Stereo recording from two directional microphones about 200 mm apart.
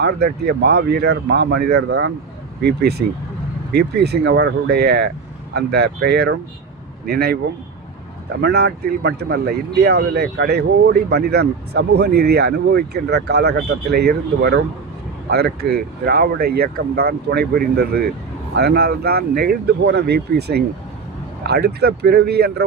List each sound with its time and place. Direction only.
0.0 s speech: 55° right (ahead or behind)
8.4 s speech: 55° right (ahead or behind)